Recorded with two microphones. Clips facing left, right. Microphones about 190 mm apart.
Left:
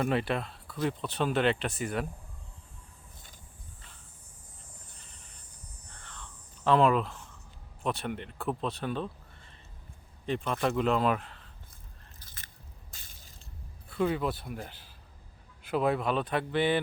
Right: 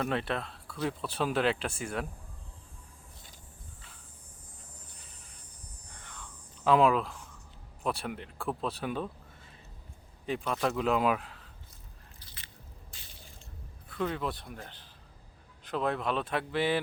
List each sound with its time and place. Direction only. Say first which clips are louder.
0.0 s speech: left 3 dB; 5° left (ahead or behind)
5.9 s a sound: even; 15° right (ahead or behind)
6.7 s speech: even; 5° right (ahead or behind)
10.2 s speech: left 1 dB; 5° right (ahead or behind)
12.2 s biting: left 1 dB; 45° left (ahead or behind)
12.9 s a sound: right 2 dB; 45° left (ahead or behind)
13.9 s speech: left 4 dB; 5° left (ahead or behind)